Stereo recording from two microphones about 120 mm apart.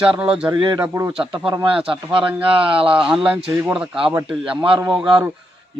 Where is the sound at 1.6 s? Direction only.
50° right (ahead or behind).